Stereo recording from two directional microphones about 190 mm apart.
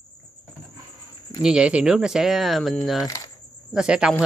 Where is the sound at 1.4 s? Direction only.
5° right (ahead or behind).